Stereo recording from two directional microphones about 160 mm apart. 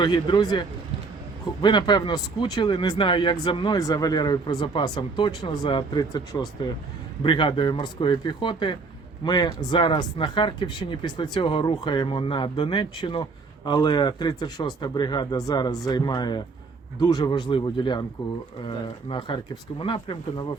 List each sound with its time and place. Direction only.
0.0 s speech: 25° left (ahead or behind)
1.6 s speech: 25° left (ahead or behind)
19.0 s speech: 30° left (ahead or behind)